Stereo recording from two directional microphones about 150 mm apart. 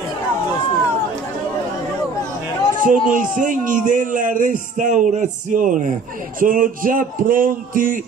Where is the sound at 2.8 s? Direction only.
60° right (ahead or behind).